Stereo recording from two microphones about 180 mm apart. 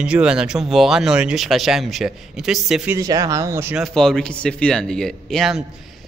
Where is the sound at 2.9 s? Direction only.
20° right (ahead or behind).